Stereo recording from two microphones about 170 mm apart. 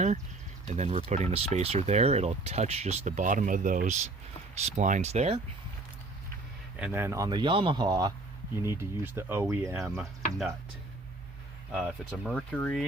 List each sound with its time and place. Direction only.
0.7 s speech: 40° right (ahead or behind)
6.7 s speech: 10° right (ahead or behind)
9.9 s speech: centre (ahead or behind)
11.7 s speech: 5° right (ahead or behind)